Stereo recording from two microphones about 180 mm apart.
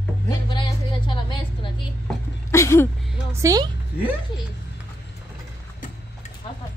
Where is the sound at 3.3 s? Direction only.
20° right (ahead or behind).